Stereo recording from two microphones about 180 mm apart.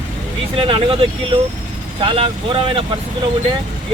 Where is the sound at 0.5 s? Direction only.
30° right (ahead or behind).